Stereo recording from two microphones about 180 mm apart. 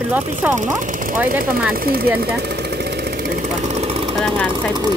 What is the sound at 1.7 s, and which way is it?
Speech, 55° right (ahead or behind).